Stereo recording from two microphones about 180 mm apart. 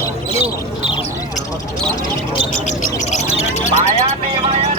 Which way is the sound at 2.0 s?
25° left (ahead or behind).